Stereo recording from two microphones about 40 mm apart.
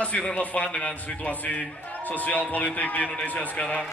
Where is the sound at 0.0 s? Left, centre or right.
Left.